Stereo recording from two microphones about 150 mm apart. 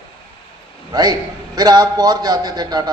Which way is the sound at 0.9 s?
25° right (ahead or behind).